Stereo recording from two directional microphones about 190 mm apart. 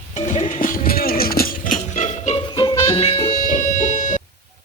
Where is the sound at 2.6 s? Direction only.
25° left (ahead or behind).